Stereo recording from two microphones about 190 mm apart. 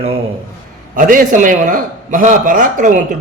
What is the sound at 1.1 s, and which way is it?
A man's voice, 45° right (ahead or behind).